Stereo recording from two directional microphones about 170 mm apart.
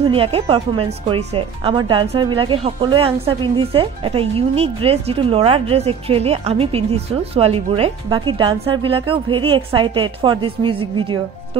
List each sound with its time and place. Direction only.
0.1 s speech: 35° right (ahead or behind)